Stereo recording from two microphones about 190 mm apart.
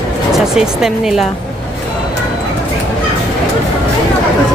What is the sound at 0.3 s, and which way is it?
Speech, 5° right (ahead or behind).